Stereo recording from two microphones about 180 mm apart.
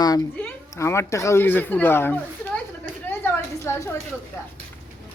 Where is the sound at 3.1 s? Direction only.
10° left (ahead or behind).